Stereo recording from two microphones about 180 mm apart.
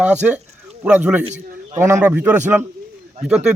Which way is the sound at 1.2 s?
35° right (ahead or behind).